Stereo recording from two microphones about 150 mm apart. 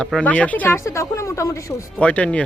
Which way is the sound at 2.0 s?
10° left (ahead or behind).